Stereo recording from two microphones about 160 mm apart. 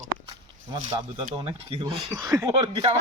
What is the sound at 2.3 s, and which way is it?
Speech, 25° right (ahead or behind).